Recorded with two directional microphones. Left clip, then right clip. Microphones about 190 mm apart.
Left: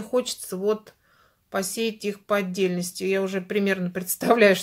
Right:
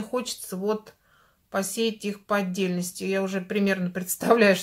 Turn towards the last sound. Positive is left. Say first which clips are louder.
# left 2 dB
turn(degrees=30)  # may be behind; listen again after turning